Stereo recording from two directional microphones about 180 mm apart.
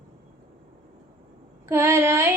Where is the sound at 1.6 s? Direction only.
15° right (ahead or behind).